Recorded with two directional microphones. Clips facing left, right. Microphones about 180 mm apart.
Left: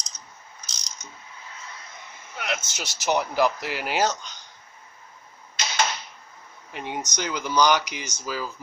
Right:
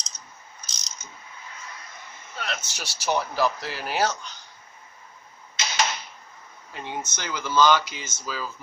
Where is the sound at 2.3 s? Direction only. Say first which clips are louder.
Left 3 dB; 15° left (ahead or behind).